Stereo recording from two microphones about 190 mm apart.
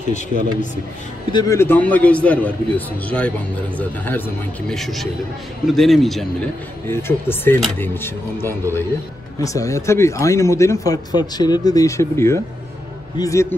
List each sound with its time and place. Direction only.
1.3 s a man's voice: 15° left (ahead or behind)
6.9 s speech: 10° left (ahead or behind)